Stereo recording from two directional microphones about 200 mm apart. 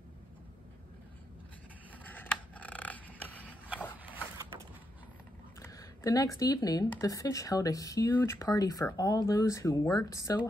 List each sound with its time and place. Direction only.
2.0 s a sound: 10° left (ahead or behind)
4.0 s printer: 10° right (ahead or behind)
5.7 s speech: 15° left (ahead or behind)